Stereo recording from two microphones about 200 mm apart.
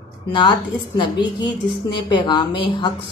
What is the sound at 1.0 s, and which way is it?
A woman's voice, 20° left (ahead or behind).